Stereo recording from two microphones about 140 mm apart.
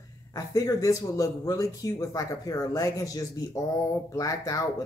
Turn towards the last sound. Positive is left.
turn(degrees=25)  # may be behind; listen again after turning